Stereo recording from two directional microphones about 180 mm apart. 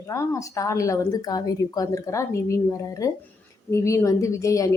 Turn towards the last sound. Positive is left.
turn(degrees=15)  # may be behind; listen again after turning